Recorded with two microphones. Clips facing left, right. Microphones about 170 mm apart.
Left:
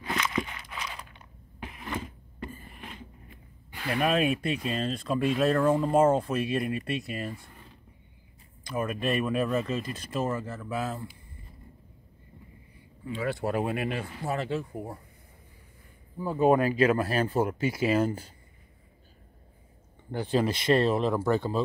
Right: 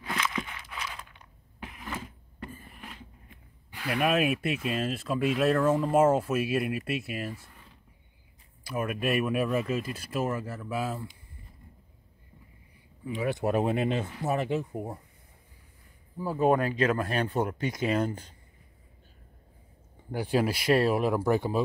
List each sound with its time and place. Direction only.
0.4 s a sound: 15° left (ahead or behind)
1.6 s a sound: centre (ahead or behind)
3.7 s speech: centre (ahead or behind)
8.6 s speech: 10° right (ahead or behind)
13.0 s speech: 15° right (ahead or behind)
16.2 s speech: centre (ahead or behind)
20.1 s speech: 10° right (ahead or behind)